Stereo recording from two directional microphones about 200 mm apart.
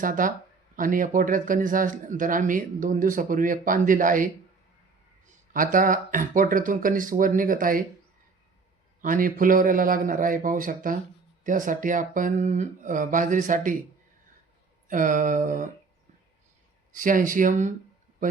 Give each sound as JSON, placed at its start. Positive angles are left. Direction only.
{"t": 0.0, "sound": "speech", "side_deg": -40}
{"t": 5.5, "sound": "speech", "side_deg": -40}
{"t": 9.0, "sound": "speech", "side_deg": -40}
{"t": 14.8, "sound": "speech", "side_deg": -40}
{"t": 16.9, "sound": "a man's voice", "side_deg": -40}